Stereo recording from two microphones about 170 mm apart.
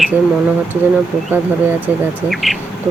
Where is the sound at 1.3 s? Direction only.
10° right (ahead or behind).